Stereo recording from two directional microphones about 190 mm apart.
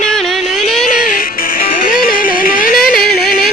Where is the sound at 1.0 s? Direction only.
45° left (ahead or behind).